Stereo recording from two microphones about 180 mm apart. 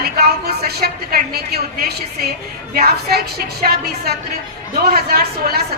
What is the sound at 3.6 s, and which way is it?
Speech, 50° right (ahead or behind).